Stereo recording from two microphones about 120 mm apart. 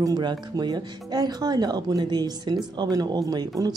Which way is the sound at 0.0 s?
35° right (ahead or behind).